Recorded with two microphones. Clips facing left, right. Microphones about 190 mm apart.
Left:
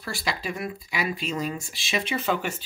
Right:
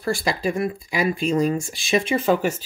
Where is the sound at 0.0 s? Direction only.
50° right (ahead or behind).